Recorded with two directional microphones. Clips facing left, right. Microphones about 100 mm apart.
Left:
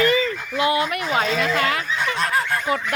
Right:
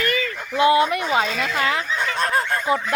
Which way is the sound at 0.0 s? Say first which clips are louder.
Left 5 dB; 25° left (ahead or behind).